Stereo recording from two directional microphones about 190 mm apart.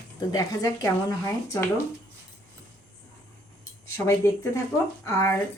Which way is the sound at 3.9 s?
15° left (ahead or behind).